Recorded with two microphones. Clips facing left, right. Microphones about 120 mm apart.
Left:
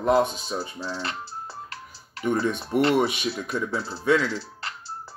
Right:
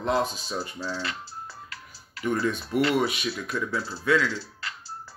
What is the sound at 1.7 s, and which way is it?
Music, 35° left (ahead or behind).